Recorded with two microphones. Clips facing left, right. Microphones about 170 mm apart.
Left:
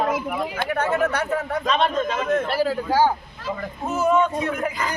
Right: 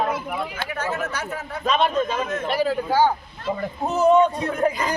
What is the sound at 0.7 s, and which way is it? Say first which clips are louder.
Speech: left 7 dB; 60° left (ahead or behind).